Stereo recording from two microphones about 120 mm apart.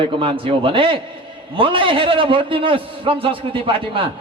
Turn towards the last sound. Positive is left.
turn(degrees=-45)  # may be behind; listen again after turning